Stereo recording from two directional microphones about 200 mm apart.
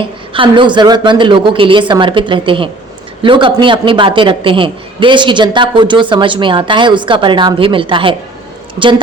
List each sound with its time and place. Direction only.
0.0 s a man's voice: 25° right (ahead or behind)